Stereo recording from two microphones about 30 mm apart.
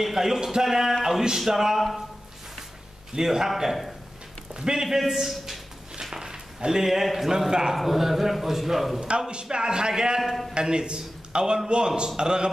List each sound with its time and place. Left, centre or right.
0.0 s a man's voice: centre
1.8 s speech: centre
3.2 s a man's voice: centre
4.6 s a man's voice: right
4.8 s a man's voice: centre
6.0 s a sound: centre
6.3 s a sound: right
6.8 s a man's voice: centre
9.3 s a man's voice: right